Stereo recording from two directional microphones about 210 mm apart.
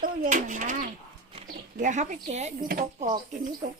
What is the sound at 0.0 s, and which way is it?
Speech, 40° right (ahead or behind).